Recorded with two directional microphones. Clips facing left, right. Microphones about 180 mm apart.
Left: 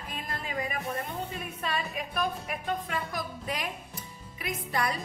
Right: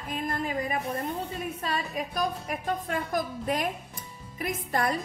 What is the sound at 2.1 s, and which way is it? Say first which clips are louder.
Speech: right 1 dB; 45° right (ahead or behind).